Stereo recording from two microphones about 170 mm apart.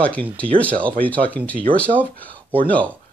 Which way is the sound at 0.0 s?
10° left (ahead or behind).